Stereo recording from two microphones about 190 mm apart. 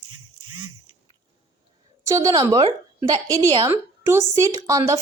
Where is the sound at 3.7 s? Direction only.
15° right (ahead or behind).